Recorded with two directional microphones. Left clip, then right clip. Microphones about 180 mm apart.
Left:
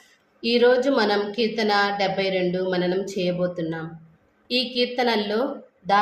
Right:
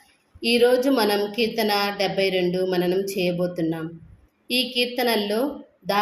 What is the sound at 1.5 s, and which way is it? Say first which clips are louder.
A woman's voice: left 4 dB; 45° right (ahead or behind).